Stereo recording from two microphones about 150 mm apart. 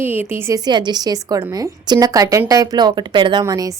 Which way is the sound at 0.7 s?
30° right (ahead or behind).